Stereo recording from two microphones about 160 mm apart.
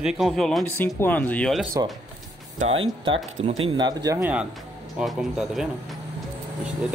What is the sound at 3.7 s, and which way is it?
Speech, 25° right (ahead or behind).